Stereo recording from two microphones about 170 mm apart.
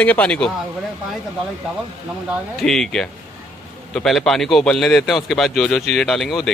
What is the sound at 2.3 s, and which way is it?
A man's voice, centre (ahead or behind).